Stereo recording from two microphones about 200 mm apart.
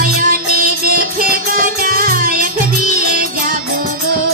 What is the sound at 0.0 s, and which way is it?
Music, 45° right (ahead or behind).